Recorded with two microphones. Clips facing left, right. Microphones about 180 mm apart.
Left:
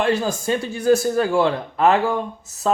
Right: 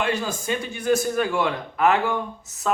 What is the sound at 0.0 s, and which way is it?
A man's voice, 35° left (ahead or behind).